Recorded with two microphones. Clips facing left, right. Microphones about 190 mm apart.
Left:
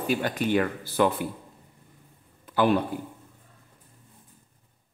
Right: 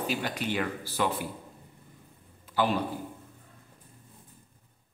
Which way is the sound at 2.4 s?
55° left (ahead or behind).